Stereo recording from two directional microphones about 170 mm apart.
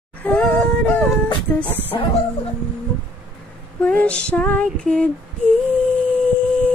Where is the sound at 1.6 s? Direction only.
10° left (ahead or behind).